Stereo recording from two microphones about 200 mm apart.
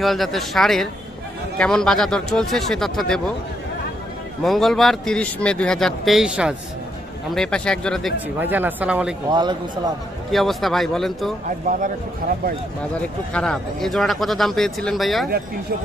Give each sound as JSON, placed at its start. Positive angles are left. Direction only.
{"t": 0.0, "sound": "a man's voice", "side_deg": 0}
{"t": 4.4, "sound": "a man's voice", "side_deg": 0}
{"t": 8.4, "sound": "speech", "side_deg": -10}
{"t": 9.3, "sound": "a man's voice", "side_deg": -20}
{"t": 10.3, "sound": "a man's voice", "side_deg": 0}
{"t": 13.0, "sound": "a man's voice", "side_deg": 5}